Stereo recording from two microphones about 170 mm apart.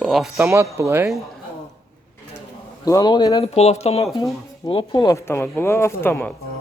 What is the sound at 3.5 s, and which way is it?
Speech, 40° left (ahead or behind).